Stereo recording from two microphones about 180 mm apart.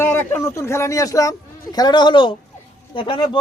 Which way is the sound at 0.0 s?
10° left (ahead or behind).